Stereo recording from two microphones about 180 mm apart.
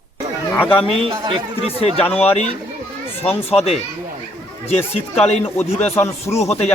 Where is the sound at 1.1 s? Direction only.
25° right (ahead or behind).